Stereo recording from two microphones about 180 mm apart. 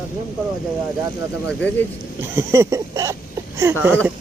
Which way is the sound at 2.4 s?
15° right (ahead or behind).